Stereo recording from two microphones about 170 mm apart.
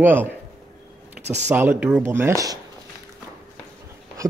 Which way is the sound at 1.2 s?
40° right (ahead or behind).